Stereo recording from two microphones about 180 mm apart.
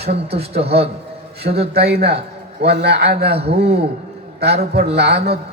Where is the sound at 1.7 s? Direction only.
60° right (ahead or behind).